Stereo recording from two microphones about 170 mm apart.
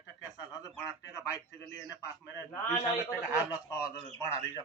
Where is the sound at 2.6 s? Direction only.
20° left (ahead or behind).